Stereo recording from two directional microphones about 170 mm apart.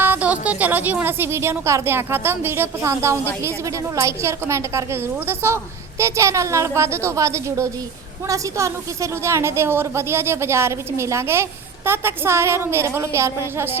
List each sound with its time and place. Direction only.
0.0 s a woman's voice: 10° right (ahead or behind)